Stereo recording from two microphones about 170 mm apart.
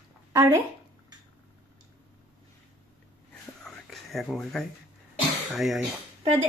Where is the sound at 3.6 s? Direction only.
Centre (ahead or behind).